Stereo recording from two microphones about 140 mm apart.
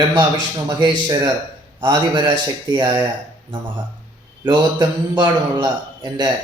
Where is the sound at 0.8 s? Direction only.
30° right (ahead or behind).